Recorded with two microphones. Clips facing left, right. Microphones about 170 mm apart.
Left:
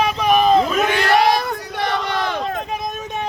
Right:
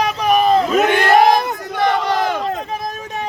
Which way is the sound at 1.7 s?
45° right (ahead or behind).